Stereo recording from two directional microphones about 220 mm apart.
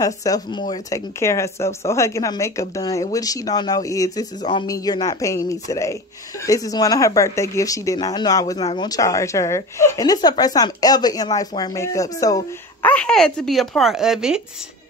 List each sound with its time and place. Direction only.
0.0 s speech: 15° left (ahead or behind); by 14.4 s centre (ahead or behind)